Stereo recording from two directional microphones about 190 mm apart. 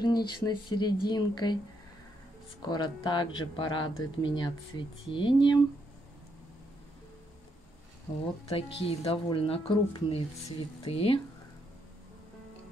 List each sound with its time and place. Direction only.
0.0 s speech: 20° left (ahead or behind)
2.6 s speech: 20° left (ahead or behind)
8.5 s speech: 30° left (ahead or behind)